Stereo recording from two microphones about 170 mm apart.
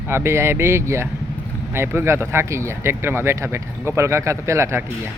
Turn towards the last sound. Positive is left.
turn(degrees=-15)  # may be behind; listen again after turning